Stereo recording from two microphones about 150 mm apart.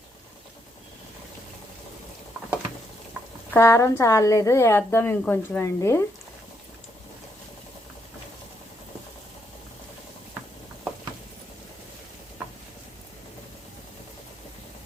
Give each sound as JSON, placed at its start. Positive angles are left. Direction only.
{"t": 3.5, "sound": "a woman's voice", "side_deg": 20}